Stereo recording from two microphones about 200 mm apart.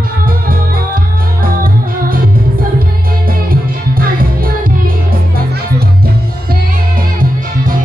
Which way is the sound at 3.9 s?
45° right (ahead or behind).